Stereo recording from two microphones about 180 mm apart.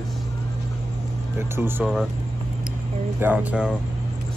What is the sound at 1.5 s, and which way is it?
Speech, 10° right (ahead or behind).